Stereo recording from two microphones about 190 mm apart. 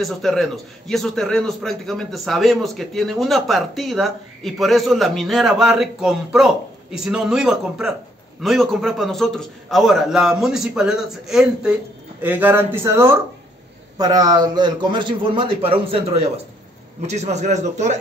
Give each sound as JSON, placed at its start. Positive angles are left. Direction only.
{"t": 0.0, "sound": "a man's voice", "side_deg": 0}